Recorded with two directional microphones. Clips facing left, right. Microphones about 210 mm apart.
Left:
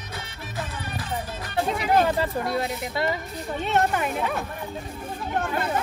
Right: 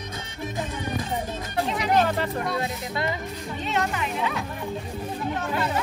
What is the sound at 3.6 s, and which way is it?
Speech, 50° left (ahead or behind).